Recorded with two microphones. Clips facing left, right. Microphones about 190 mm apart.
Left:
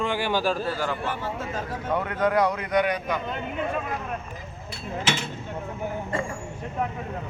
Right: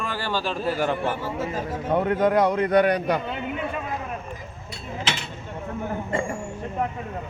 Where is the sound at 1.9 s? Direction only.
20° right (ahead or behind).